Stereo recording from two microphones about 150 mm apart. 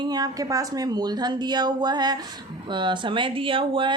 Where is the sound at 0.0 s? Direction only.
25° right (ahead or behind).